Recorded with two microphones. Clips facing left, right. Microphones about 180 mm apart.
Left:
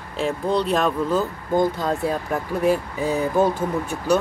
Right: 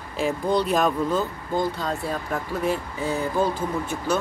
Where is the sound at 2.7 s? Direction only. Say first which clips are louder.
Left 5 dB; 15° left (ahead or behind).